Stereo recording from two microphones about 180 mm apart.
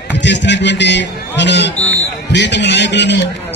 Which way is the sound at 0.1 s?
80° left.